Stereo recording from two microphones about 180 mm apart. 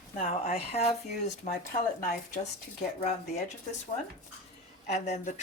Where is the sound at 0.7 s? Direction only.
35° left (ahead or behind).